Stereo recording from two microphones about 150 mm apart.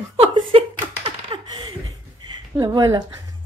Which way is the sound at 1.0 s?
35° right (ahead or behind).